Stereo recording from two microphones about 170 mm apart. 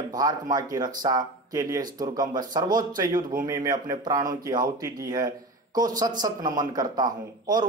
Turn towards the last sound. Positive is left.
turn(degrees=-25)  # may be behind; listen again after turning